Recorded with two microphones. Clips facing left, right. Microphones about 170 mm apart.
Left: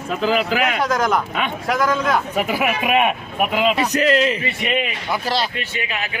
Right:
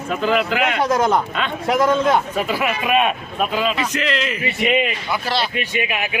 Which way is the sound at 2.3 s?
15° left (ahead or behind).